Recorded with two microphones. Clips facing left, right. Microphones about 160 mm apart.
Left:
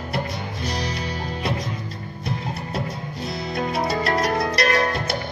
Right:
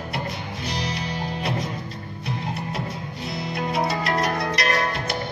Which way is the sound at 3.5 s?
40° left (ahead or behind).